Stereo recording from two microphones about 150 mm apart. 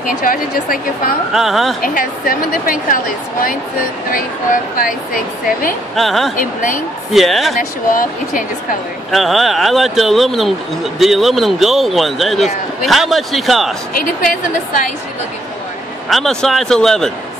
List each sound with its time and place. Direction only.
0.0 s speech: 70° left (ahead or behind)
1.3 s speech: centre (ahead or behind)
1.8 s speech: 70° left (ahead or behind)
4.1 s speech: 65° left (ahead or behind)
5.9 s speech: centre (ahead or behind)
6.3 s a woman's voice: 65° left (ahead or behind)
7.1 s speech: centre (ahead or behind)
7.5 s a woman's voice: 65° left (ahead or behind)
9.1 s speech: centre (ahead or behind)
16.1 s speech: centre (ahead or behind)